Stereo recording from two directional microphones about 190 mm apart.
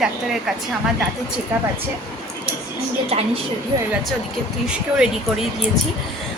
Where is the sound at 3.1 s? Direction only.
30° right (ahead or behind).